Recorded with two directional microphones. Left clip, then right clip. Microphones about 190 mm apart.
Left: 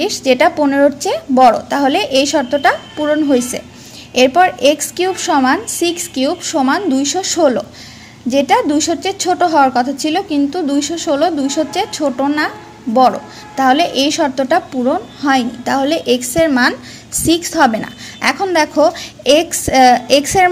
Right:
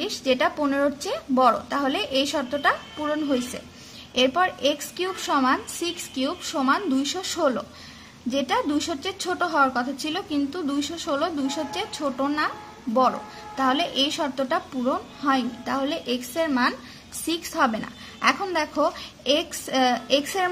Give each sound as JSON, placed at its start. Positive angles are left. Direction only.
{"t": 0.0, "sound": "a woman's voice", "side_deg": 15}